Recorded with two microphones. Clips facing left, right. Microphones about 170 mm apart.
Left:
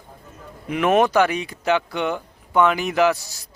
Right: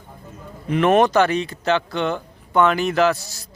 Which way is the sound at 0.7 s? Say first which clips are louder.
Right 2 dB; 5° left (ahead or behind).